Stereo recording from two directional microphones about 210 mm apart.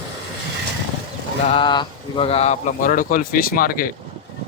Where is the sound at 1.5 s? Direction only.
20° left (ahead or behind); by 3.9 s 45° left (ahead or behind).